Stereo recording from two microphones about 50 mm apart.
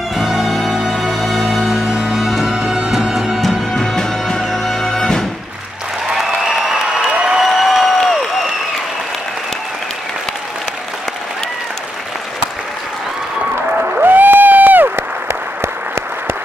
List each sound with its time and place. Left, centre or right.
0.1 s music: centre
3.3 s music: centre
6.0 s applause: centre
7.4 s applause: centre
13.9 s applause: right
15.6 s applause: right